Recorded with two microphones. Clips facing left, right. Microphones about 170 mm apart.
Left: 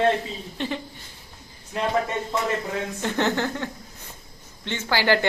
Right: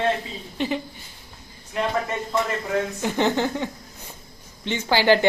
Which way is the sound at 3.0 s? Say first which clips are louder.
Even; 15° right (ahead or behind).